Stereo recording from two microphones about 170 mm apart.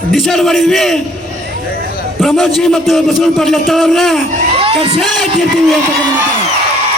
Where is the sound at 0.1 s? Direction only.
Centre (ahead or behind).